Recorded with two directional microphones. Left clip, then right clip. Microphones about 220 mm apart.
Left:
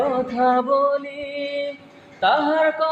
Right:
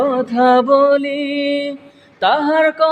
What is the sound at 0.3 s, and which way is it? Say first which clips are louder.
Mantra: right 8 dB; 50° right (ahead or behind).